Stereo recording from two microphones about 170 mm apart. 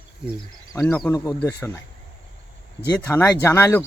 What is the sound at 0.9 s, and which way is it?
Speech, 10° left (ahead or behind).